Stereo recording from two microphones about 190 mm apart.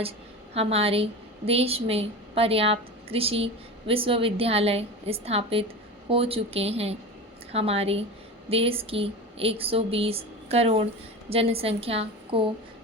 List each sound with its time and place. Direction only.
0.5 s a woman's voice: 30° right (ahead or behind)